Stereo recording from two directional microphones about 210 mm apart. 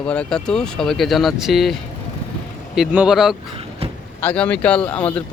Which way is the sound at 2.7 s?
5° right (ahead or behind).